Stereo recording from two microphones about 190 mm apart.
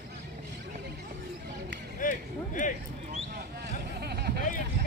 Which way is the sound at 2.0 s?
45° left (ahead or behind).